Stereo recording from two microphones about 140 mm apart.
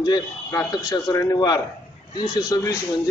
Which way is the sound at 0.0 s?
25° left (ahead or behind).